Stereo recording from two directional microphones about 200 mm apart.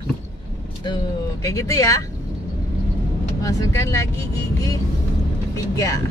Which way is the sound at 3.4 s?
15° left (ahead or behind).